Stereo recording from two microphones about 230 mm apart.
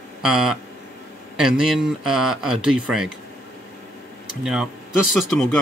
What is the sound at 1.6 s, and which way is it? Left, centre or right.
Speech, centre.